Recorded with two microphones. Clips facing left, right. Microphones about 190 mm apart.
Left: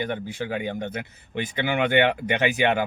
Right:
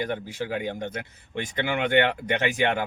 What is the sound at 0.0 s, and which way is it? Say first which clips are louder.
Speech: left 1 dB; centre (ahead or behind).